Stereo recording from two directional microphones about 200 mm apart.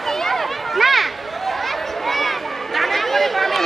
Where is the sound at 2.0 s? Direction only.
Centre (ahead or behind).